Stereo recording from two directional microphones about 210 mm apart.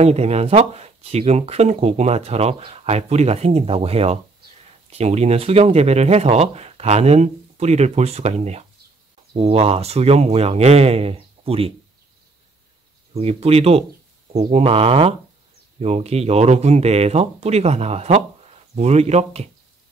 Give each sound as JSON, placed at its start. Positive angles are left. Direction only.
{"t": 0.0, "sound": "speech", "side_deg": -30}
{"t": 13.1, "sound": "speech", "side_deg": -30}